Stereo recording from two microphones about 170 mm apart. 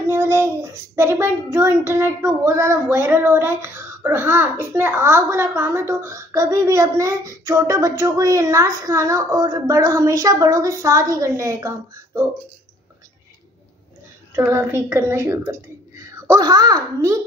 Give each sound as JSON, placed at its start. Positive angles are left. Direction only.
{"t": 0.1, "sound": "a child's voice", "side_deg": -15}
{"t": 14.3, "sound": "a child's voice", "side_deg": -15}